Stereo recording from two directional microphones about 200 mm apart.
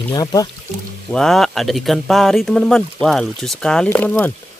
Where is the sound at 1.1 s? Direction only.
Centre (ahead or behind).